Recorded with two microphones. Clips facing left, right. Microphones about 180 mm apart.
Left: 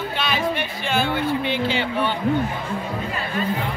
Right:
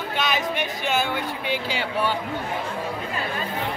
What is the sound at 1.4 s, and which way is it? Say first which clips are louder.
Speech: left 4 dB; 10° right (ahead or behind).